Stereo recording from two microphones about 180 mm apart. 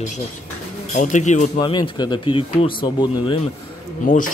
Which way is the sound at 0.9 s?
40° left (ahead or behind).